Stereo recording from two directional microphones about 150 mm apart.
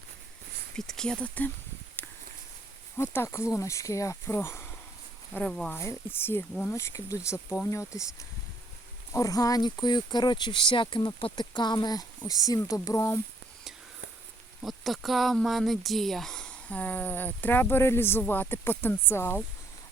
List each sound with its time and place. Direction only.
0.8 s speech: 5° left (ahead or behind)
2.0 s a sound: centre (ahead or behind)
3.0 s speech: 15° left (ahead or behind)
9.1 s speech: 25° left (ahead or behind)
14.6 s speech: centre (ahead or behind)